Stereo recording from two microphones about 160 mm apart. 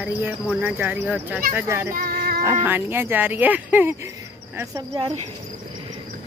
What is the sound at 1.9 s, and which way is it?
Music, 70° right (ahead or behind).